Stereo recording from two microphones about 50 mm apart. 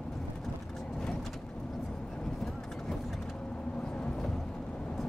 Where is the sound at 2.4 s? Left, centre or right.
Centre.